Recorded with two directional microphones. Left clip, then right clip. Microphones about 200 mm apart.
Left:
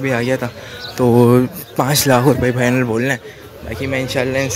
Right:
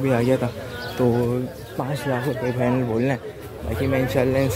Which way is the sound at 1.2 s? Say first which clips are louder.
Left 12 dB; 35° left (ahead or behind).